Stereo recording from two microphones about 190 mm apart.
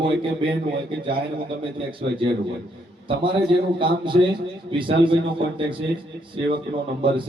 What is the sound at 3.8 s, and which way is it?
A man's voice, 25° right (ahead or behind).